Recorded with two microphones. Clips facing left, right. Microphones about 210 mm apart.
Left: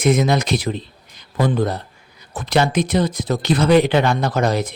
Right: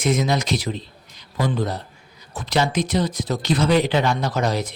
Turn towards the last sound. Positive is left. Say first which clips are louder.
# left 4 dB
turn(degrees=55)  # may be behind; listen again after turning